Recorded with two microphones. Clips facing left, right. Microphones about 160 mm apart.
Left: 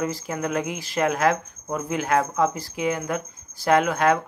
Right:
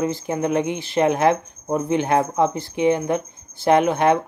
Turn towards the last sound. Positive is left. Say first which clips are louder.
# right 3 dB
turn(degrees=-25)  # may be behind; listen again after turning